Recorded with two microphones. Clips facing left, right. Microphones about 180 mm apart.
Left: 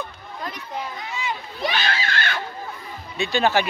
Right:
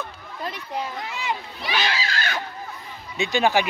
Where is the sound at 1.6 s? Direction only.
50° left (ahead or behind).